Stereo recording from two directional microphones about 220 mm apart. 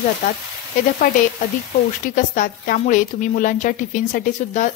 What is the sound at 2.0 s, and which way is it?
A woman's voice, 35° left (ahead or behind).